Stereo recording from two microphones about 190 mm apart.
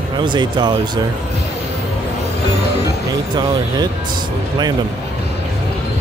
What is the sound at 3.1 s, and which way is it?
Speech, 20° right (ahead or behind).